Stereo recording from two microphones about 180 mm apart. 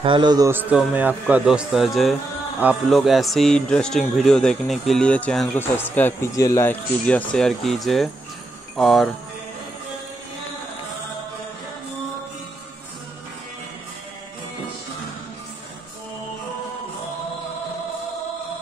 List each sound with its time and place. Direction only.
0.0 s a man's voice: 25° right (ahead or behind); by 9.1 s centre (ahead or behind)